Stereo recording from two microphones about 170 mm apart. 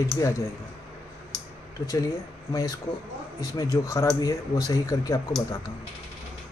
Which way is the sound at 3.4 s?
20° left (ahead or behind).